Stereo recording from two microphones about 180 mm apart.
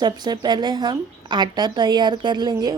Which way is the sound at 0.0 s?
25° right (ahead or behind).